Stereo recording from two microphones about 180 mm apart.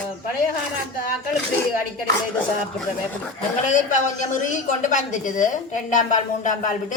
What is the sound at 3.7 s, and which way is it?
A woman's voice, 45° left (ahead or behind).